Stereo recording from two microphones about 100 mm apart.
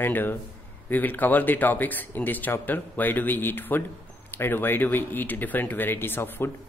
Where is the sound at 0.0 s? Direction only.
20° left (ahead or behind).